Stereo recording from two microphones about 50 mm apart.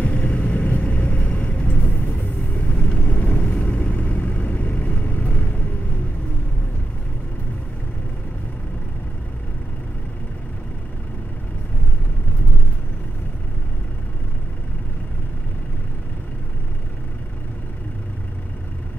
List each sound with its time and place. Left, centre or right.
0.0 s vehicle: left